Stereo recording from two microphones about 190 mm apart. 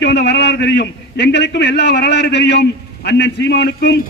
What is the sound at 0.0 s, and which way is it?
A man's voice, 65° left (ahead or behind).